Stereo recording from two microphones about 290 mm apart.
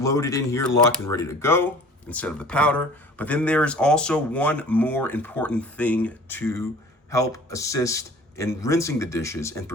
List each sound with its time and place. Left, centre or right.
0.0 s a man's voice: centre